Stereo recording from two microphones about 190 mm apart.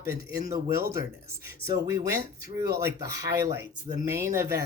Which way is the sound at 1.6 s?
15° right (ahead or behind).